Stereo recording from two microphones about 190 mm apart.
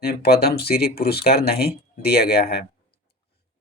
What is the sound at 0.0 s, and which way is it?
Speech, 55° left (ahead or behind).